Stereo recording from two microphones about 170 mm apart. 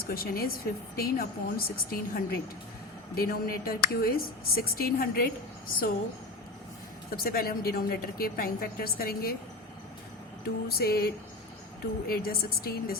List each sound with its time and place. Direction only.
0.1 s speech: 60° left (ahead or behind)
7.2 s speech: 60° left (ahead or behind)
10.7 s speech: 65° left (ahead or behind)